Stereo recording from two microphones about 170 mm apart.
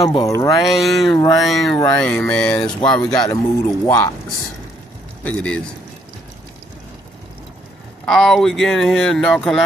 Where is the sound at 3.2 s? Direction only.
20° left (ahead or behind).